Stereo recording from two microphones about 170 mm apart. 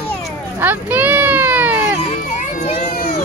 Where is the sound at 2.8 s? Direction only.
60° left (ahead or behind).